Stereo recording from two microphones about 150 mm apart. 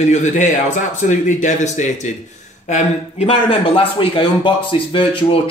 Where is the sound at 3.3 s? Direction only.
40° left (ahead or behind).